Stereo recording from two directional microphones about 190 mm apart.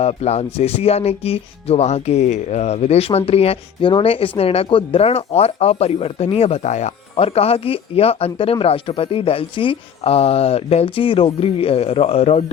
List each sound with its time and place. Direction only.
0.0 s speech: 35° left (ahead or behind)